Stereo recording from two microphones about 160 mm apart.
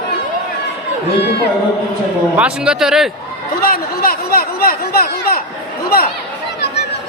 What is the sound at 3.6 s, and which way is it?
Speech, 65° left (ahead or behind).